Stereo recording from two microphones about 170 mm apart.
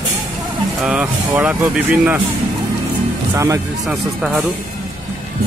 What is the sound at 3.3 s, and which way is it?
Speech, 20° right (ahead or behind).